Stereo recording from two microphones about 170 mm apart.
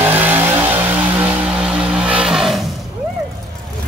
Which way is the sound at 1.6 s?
5° right (ahead or behind).